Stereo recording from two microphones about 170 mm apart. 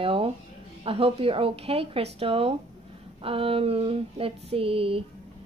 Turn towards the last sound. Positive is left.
turn(degrees=-35)  # may be behind; listen again after turning